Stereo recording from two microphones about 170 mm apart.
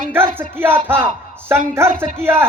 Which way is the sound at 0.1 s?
10° right (ahead or behind).